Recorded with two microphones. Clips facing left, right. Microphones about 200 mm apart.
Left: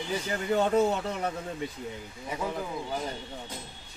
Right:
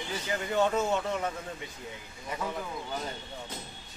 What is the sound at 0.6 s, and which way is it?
Speech, 35° left (ahead or behind).